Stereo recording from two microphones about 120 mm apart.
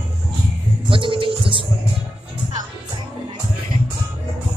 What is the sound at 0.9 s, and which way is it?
Music, 45° right (ahead or behind).